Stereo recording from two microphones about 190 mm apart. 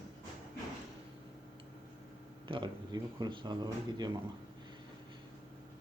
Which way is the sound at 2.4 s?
25° right (ahead or behind).